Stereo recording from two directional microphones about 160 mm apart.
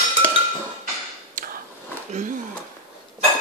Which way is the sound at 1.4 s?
60° right (ahead or behind).